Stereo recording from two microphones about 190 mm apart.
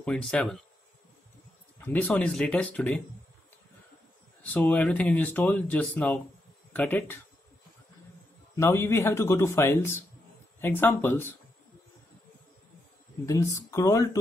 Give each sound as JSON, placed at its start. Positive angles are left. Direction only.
{"t": 0.0, "sound": "speech", "side_deg": 5}
{"t": 1.8, "sound": "speech", "side_deg": 10}
{"t": 4.4, "sound": "speech", "side_deg": 10}
{"t": 8.5, "sound": "speech", "side_deg": 15}
{"t": 13.2, "sound": "speech", "side_deg": 15}